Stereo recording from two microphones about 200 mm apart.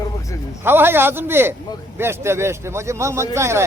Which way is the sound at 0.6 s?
10° right (ahead or behind).